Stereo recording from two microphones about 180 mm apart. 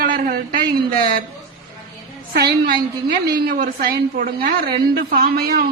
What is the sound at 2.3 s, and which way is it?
A woman's voice, 60° right (ahead or behind).